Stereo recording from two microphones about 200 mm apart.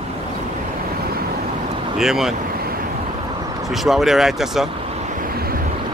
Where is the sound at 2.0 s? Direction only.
Centre (ahead or behind).